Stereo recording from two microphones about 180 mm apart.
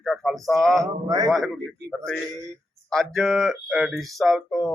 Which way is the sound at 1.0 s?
20° right (ahead or behind).